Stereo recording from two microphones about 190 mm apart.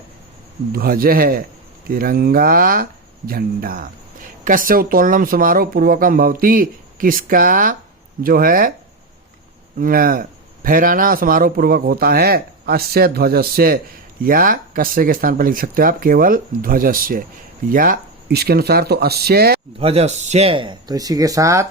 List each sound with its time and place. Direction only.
0.7 s speech: 50° right (ahead or behind)
9.7 s speech: 50° right (ahead or behind)
19.8 s speech: 35° right (ahead or behind); by 21.7 s 15° right (ahead or behind)